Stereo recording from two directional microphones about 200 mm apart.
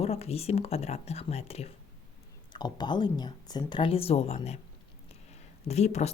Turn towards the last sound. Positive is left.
turn(degrees=35)  # may be behind; listen again after turning